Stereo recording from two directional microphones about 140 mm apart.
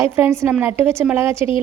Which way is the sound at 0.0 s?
15° right (ahead or behind).